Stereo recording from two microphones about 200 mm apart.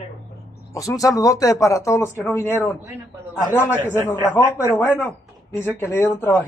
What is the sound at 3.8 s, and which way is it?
Speech, 10° left (ahead or behind).